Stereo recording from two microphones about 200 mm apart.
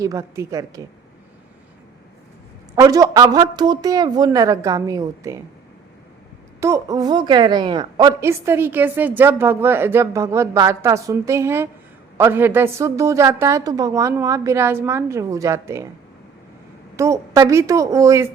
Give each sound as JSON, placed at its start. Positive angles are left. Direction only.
{"t": 0.0, "sound": "a woman's voice", "side_deg": -15}
{"t": 2.7, "sound": "a woman's voice", "side_deg": -15}
{"t": 6.6, "sound": "a woman's voice", "side_deg": -15}
{"t": 17.0, "sound": "a woman's voice", "side_deg": -15}